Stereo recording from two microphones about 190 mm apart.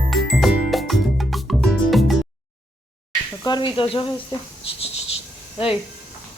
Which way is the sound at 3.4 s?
20° left (ahead or behind).